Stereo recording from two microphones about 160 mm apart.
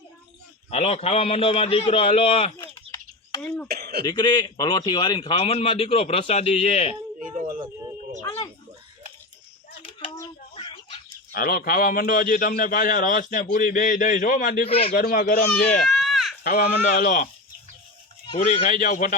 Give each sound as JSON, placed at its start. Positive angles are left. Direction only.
{"t": 0.7, "sound": "a man's voice", "side_deg": 45}
{"t": 3.4, "sound": "speech", "side_deg": 5}
{"t": 3.7, "sound": "throat clearing", "side_deg": -80}
{"t": 4.0, "sound": "a man's voice", "side_deg": 25}
{"t": 7.2, "sound": "a sound", "side_deg": -55}
{"t": 10.5, "sound": "a sound", "side_deg": 35}
{"t": 11.3, "sound": "a man's voice", "side_deg": 65}
{"t": 14.7, "sound": "a man's voice", "side_deg": 35}
{"t": 14.9, "sound": "a man's voice", "side_deg": 65}
{"t": 15.8, "sound": "a sound", "side_deg": 0}
{"t": 16.4, "sound": "a man's voice", "side_deg": 60}
{"t": 18.3, "sound": "a man's voice", "side_deg": 60}